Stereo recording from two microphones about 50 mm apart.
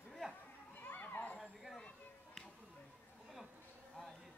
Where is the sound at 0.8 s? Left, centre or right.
Left.